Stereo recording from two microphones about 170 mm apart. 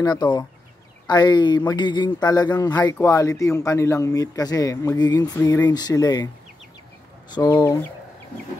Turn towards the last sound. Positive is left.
turn(degrees=20)  # may be behind; listen again after turning